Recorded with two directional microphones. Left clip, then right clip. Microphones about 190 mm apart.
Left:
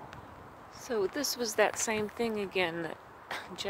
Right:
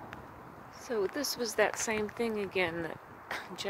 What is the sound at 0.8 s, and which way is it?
Speech, 15° left (ahead or behind).